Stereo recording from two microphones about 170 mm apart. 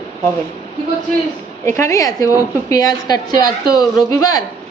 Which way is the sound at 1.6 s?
15° left (ahead or behind).